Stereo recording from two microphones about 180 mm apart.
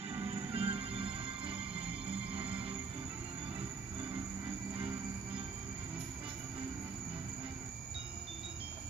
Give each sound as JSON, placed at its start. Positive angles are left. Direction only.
{"t": 0.2, "sound": "music", "side_deg": -30}